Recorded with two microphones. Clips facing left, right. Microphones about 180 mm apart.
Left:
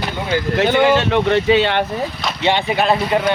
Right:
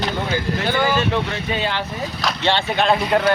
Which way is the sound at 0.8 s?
70° left (ahead or behind).